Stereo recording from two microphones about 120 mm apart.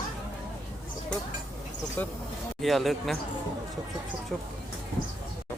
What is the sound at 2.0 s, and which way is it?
Speech, 15° left (ahead or behind).